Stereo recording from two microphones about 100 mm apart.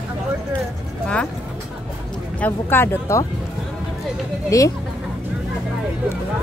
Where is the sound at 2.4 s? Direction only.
20° left (ahead or behind).